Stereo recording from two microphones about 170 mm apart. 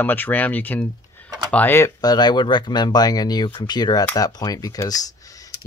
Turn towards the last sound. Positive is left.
turn(degrees=20)  # may be behind; listen again after turning